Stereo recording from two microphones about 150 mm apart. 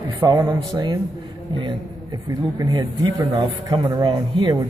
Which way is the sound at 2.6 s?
25° right (ahead or behind).